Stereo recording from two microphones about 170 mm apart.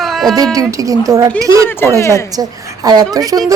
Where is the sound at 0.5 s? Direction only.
20° right (ahead or behind).